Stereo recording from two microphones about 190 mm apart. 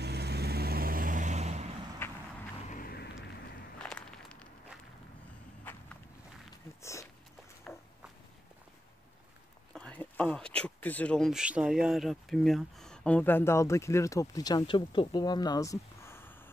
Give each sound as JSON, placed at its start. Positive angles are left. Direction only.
{"t": 0.0, "sound": "vehicle", "side_deg": -60}
{"t": 2.0, "sound": "vehicle", "side_deg": 10}
{"t": 2.7, "sound": "vehicle", "side_deg": 50}
{"t": 3.8, "sound": "walk", "side_deg": 5}
{"t": 6.8, "sound": "a sound", "side_deg": 15}
{"t": 7.7, "sound": "walk", "side_deg": 0}
{"t": 9.8, "sound": "speech", "side_deg": 5}